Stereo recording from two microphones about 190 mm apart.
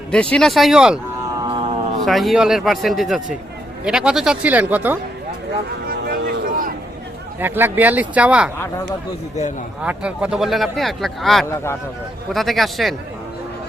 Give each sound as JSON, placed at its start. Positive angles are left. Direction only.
{"t": 0.1, "sound": "speech", "side_deg": 5}
{"t": 1.4, "sound": "a sound", "side_deg": -25}
{"t": 2.0, "sound": "speech", "side_deg": 0}
{"t": 5.9, "sound": "a sound", "side_deg": -55}
{"t": 7.3, "sound": "a man's voice", "side_deg": -10}
{"t": 9.8, "sound": "speech", "side_deg": -5}
{"t": 11.4, "sound": "speech", "side_deg": 15}
{"t": 12.3, "sound": "speech", "side_deg": 0}